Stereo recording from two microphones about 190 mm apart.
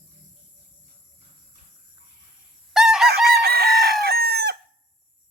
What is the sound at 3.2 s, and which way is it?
Chicken, 55° right (ahead or behind).